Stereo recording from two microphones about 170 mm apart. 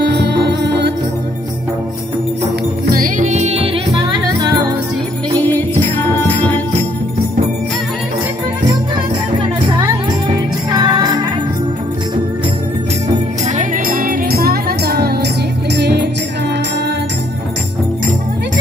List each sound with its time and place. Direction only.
0.0 s music: 80° right
2.9 s music: 55° right (ahead or behind); by 3.8 s 35° right (ahead or behind)
5.5 s music: 10° left (ahead or behind)
9.8 s music: 25° right (ahead or behind)
13.6 s music: 55° right (ahead or behind)
15.7 s music: 85° right